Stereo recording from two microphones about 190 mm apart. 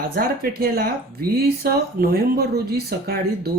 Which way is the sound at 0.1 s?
55° right (ahead or behind).